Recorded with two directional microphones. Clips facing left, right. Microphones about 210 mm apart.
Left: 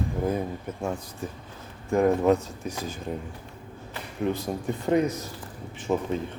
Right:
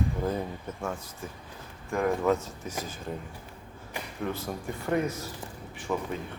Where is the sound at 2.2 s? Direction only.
15° left (ahead or behind).